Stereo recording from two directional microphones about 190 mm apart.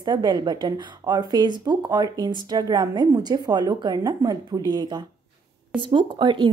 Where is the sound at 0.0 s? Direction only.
20° right (ahead or behind).